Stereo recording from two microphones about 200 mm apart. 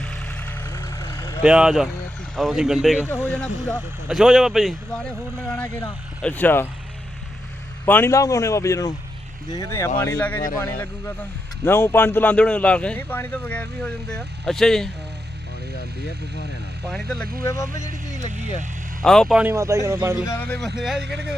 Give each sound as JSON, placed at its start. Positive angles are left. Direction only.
{"t": 0.0, "sound": "vehicle", "side_deg": 5}
{"t": 1.4, "sound": "speech", "side_deg": -5}
{"t": 7.9, "sound": "a man's voice", "side_deg": 10}
{"t": 16.9, "sound": "speech", "side_deg": 5}
{"t": 17.4, "sound": "speech", "side_deg": 15}
{"t": 19.0, "sound": "a man's voice", "side_deg": 0}
{"t": 20.3, "sound": "speech", "side_deg": 5}